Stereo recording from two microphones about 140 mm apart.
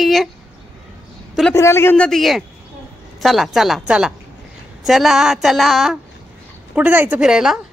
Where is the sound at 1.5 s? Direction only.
20° left (ahead or behind).